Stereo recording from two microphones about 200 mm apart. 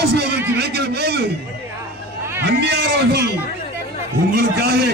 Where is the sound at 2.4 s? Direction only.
55° right (ahead or behind).